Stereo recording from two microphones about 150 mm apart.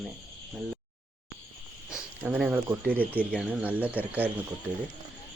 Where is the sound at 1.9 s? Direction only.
5° right (ahead or behind).